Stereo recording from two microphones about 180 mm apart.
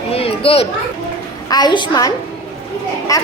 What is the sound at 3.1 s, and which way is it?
Speech, 20° left (ahead or behind).